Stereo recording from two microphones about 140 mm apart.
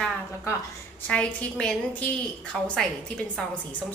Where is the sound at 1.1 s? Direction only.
5° left (ahead or behind).